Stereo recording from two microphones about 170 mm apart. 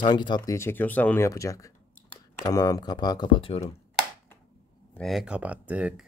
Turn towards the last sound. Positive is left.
turn(degrees=-10)  # may be behind; listen again after turning